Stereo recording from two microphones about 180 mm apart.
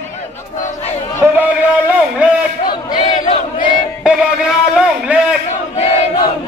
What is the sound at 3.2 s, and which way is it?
Battle cry, 45° left (ahead or behind).